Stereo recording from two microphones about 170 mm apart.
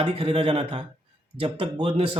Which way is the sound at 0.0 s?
35° right (ahead or behind).